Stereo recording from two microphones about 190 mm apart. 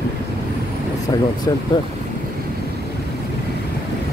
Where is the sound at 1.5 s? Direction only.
20° left (ahead or behind).